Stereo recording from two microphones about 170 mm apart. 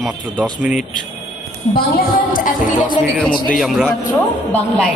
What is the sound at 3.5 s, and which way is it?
Speech, centre (ahead or behind).